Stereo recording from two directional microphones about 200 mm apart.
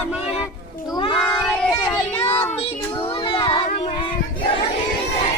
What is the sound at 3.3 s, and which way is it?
Music, 25° left (ahead or behind).